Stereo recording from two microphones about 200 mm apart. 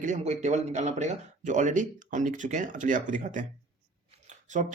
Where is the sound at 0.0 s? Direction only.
35° right (ahead or behind).